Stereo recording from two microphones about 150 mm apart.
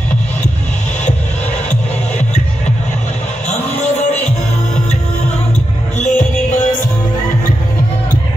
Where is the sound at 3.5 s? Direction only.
45° left (ahead or behind).